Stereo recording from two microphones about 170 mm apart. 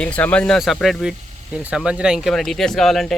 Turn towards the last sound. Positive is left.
turn(degrees=0)  # may be behind; listen again after turning